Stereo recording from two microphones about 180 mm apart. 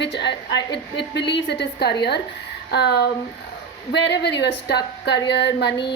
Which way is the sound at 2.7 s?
70° left (ahead or behind).